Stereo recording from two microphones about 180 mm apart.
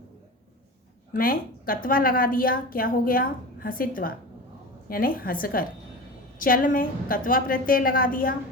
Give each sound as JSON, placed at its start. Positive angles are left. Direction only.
{"t": 1.1, "sound": "a woman's voice", "side_deg": 50}